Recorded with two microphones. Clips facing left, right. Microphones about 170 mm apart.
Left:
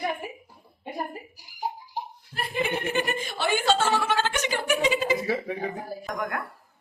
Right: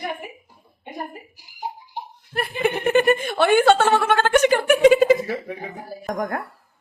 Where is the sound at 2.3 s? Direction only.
60° right (ahead or behind).